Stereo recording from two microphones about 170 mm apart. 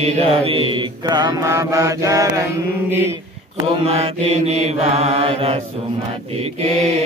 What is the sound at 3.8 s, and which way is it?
Mantra, 35° right (ahead or behind).